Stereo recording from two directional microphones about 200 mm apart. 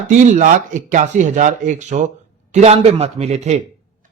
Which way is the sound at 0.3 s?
40° right (ahead or behind).